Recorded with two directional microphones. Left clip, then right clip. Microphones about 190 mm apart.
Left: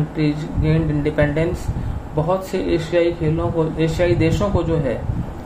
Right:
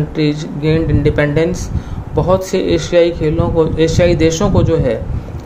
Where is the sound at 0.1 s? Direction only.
40° right (ahead or behind).